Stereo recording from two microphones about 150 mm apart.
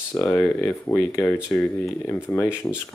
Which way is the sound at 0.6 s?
20° left (ahead or behind).